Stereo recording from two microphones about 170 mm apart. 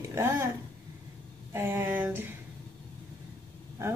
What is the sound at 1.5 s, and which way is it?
Speech, 15° right (ahead or behind).